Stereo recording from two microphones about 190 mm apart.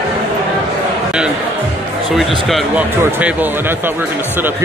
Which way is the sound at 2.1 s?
Centre (ahead or behind).